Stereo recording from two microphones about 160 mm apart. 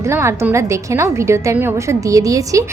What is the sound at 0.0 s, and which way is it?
A woman's voice, 15° right (ahead or behind).